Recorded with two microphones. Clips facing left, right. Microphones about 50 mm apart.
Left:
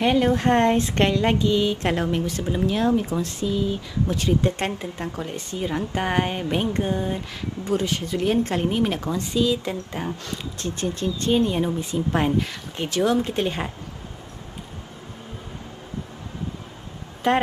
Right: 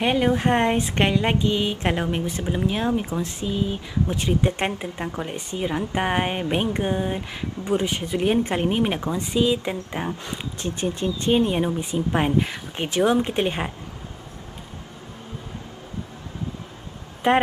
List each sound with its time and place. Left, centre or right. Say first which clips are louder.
0.0 s a woman's voice: left 1 dB; centre
17.2 s a woman's voice: right 2 dB; right